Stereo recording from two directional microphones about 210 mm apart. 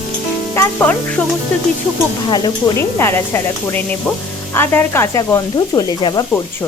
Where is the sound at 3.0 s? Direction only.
10° left (ahead or behind).